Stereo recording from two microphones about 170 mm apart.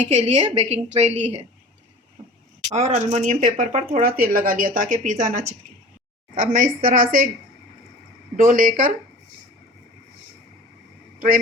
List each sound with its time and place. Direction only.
0.1 s a woman's voice: 40° right (ahead or behind)
2.7 s a woman's voice: 40° right (ahead or behind)
8.4 s a woman's voice: 50° right (ahead or behind)